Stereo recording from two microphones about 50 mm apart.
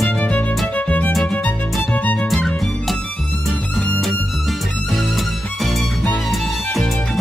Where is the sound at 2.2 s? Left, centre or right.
Centre.